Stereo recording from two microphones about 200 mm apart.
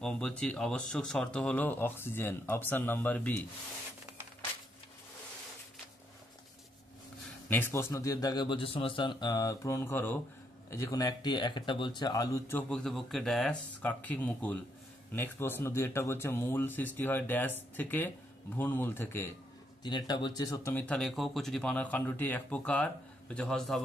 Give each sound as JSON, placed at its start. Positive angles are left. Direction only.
{"t": 0.0, "sound": "speech", "side_deg": 5}
{"t": 7.4, "sound": "speech", "side_deg": 10}
{"t": 19.8, "sound": "speech", "side_deg": 20}